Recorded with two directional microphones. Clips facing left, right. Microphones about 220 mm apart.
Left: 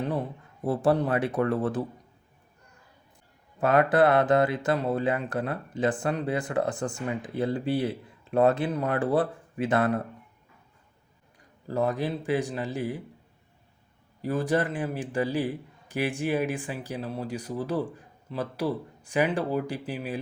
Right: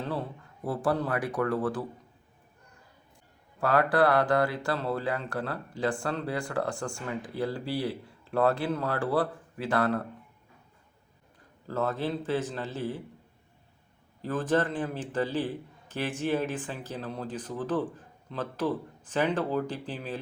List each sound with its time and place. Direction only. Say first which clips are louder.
0.0 s speech: left 4 dB; 20° left (ahead or behind)
3.6 s speech: left 3 dB; 20° left (ahead or behind)
11.7 s a man's voice: left 3 dB; 15° left (ahead or behind)
14.2 s a man's voice: left 1 dB; 10° left (ahead or behind)